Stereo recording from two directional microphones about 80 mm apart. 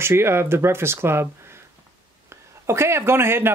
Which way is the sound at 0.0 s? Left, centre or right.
Right.